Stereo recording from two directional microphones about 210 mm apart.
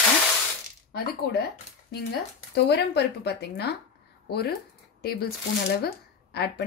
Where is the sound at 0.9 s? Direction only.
50° left (ahead or behind).